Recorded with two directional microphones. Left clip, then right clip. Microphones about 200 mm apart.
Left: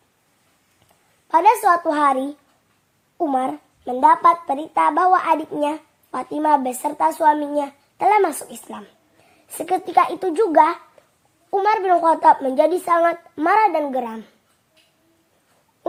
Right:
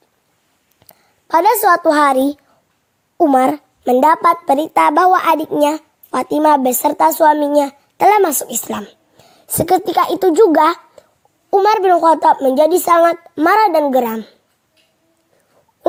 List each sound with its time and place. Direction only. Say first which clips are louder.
1.3 s a woman's voice: right 3 dB; 40° right (ahead or behind)